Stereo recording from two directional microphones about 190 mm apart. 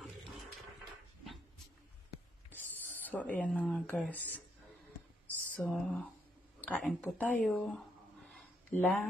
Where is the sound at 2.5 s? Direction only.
10° left (ahead or behind).